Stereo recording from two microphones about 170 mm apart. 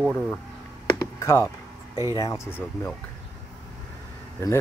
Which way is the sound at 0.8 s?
20° left (ahead or behind).